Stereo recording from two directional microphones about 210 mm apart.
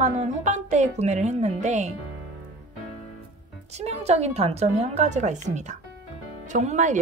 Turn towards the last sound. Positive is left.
turn(degrees=-35)  # may be behind; listen again after turning